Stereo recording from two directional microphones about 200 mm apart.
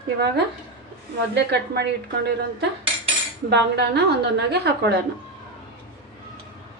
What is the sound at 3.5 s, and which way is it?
A woman's voice, 55° right (ahead or behind).